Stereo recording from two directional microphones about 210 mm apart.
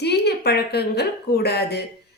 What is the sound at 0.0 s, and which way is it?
A woman's voice, 50° left (ahead or behind).